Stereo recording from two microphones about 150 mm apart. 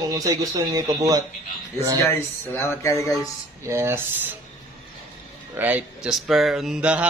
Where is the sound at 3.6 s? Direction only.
15° right (ahead or behind).